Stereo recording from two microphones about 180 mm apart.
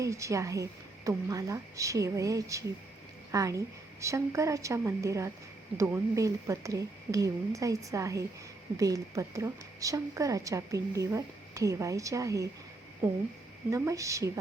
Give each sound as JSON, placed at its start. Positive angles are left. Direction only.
{"t": 0.0, "sound": "a woman's voice", "side_deg": -15}